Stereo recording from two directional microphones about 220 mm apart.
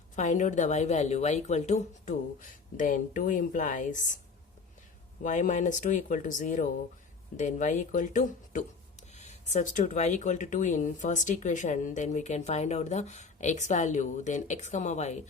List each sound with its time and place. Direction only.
0.2 s speech: 35° left (ahead or behind)
5.2 s speech: 35° left (ahead or behind)